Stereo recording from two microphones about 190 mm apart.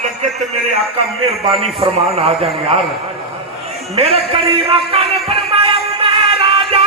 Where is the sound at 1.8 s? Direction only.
30° right (ahead or behind).